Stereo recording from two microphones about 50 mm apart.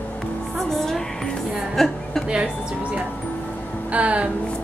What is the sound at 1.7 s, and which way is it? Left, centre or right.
Speech, centre.